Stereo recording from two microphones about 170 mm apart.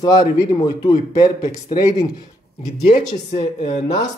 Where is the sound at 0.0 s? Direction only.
20° left (ahead or behind).